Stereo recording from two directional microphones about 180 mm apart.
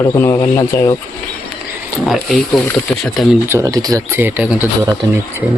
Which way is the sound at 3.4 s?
15° right (ahead or behind).